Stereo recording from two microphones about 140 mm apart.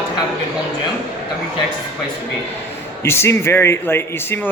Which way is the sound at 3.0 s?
20° left (ahead or behind).